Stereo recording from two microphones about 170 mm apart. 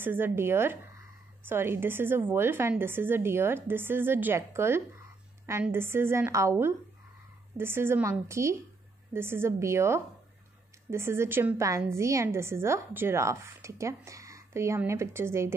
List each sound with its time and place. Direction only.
0.0 s a woman's voice: 10° right (ahead or behind)